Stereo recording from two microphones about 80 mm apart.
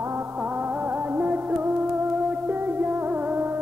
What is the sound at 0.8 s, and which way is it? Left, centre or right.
Music, right.